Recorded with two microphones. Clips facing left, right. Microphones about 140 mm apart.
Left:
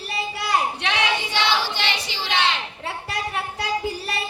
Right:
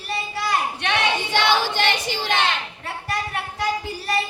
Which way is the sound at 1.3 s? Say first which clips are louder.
Right 3 dB; 50° right (ahead or behind).